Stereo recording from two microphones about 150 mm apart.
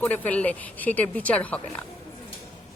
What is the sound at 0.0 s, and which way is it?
A woman's voice, 10° left (ahead or behind).